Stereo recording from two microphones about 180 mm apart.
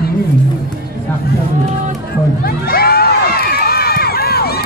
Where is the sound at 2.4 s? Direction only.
55° left (ahead or behind).